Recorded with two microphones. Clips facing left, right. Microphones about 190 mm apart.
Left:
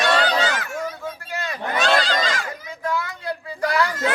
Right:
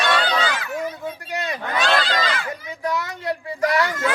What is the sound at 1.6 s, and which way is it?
Honk, 40° left (ahead or behind).